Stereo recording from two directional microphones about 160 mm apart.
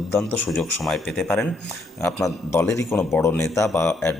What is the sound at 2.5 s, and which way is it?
Speech, 15° left (ahead or behind).